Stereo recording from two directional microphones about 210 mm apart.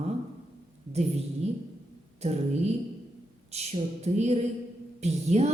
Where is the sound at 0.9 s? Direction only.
30° right (ahead or behind).